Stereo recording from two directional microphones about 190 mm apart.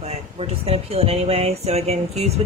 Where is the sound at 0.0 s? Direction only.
35° right (ahead or behind).